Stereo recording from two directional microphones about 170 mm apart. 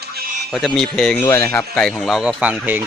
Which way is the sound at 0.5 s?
Centre (ahead or behind).